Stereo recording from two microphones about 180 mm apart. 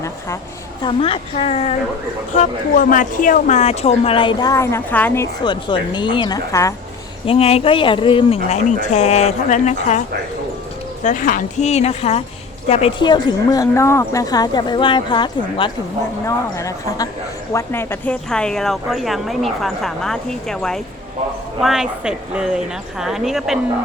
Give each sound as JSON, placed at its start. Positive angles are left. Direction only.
{"t": 0.8, "sound": "speech", "side_deg": 30}
{"t": 7.3, "sound": "speech", "side_deg": 35}
{"t": 11.0, "sound": "a woman's voice", "side_deg": 45}